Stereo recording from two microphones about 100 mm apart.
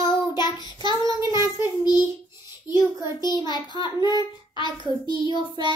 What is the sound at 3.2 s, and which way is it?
A child's voice, 45° left (ahead or behind).